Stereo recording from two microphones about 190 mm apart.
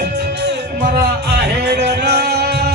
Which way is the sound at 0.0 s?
60° right (ahead or behind).